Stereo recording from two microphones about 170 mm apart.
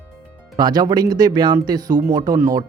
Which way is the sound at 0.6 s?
25° right (ahead or behind).